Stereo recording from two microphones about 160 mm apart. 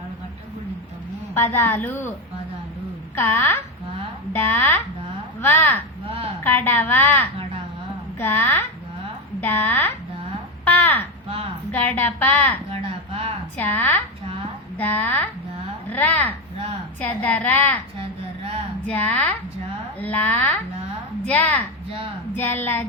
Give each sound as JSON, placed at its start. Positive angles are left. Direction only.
{"t": 1.3, "sound": "a woman's voice", "side_deg": 10}
{"t": 3.2, "sound": "a woman's voice", "side_deg": 15}
{"t": 10.7, "sound": "a sound", "side_deg": 10}
{"t": 11.7, "sound": "a woman's voice", "side_deg": 10}
{"t": 13.6, "sound": "a woman's voice", "side_deg": 10}
{"t": 18.0, "sound": "a sound", "side_deg": -40}
{"t": 18.9, "sound": "a woman's voice", "side_deg": 10}